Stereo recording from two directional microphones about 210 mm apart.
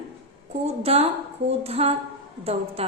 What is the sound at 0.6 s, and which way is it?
A woman's voice, 30° right (ahead or behind).